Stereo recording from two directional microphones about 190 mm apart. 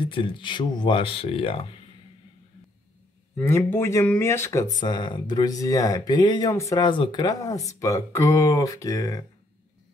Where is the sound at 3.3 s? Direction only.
10° left (ahead or behind).